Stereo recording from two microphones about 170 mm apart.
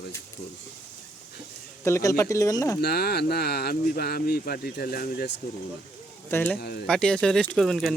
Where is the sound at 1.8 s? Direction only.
20° left (ahead or behind).